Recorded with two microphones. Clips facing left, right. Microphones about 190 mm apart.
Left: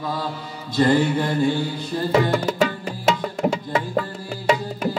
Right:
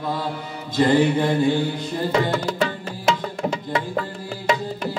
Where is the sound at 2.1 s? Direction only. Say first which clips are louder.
Left 3 dB; 10° left (ahead or behind).